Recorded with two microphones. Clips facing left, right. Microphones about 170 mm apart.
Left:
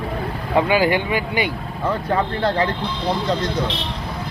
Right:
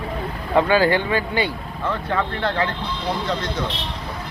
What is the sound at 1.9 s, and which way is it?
Speech, 35° left (ahead or behind).